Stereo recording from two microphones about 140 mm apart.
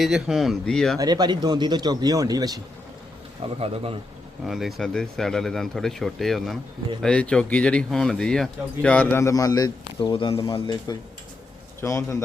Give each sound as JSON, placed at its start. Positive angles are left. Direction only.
{"t": 0.0, "sound": "speech", "side_deg": 0}
{"t": 0.9, "sound": "speech", "side_deg": -30}
{"t": 3.6, "sound": "a man's voice", "side_deg": -40}
{"t": 4.4, "sound": "speech", "side_deg": 0}
{"t": 11.8, "sound": "a man's voice", "side_deg": 20}